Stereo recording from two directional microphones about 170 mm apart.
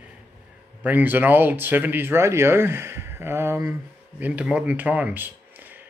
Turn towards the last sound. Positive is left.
turn(degrees=-10)  # may be behind; listen again after turning